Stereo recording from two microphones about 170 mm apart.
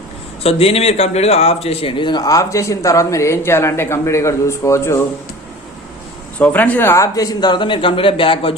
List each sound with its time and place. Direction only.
0.4 s a man's voice: 35° left (ahead or behind); by 5.0 s 15° left (ahead or behind)
6.4 s speech: 10° left (ahead or behind); by 8.5 s 30° left (ahead or behind)